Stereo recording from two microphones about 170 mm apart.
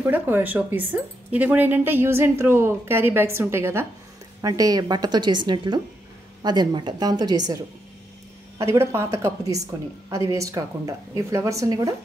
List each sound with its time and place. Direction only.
0.0 s a woman's voice: 10° right (ahead or behind)